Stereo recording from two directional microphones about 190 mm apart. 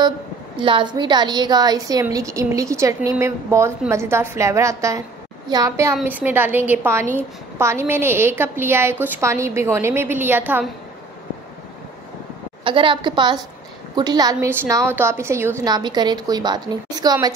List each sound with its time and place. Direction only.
0.6 s a woman's voice: 25° right (ahead or behind); by 10.7 s 10° right (ahead or behind)
12.6 s a woman's voice: 25° right (ahead or behind)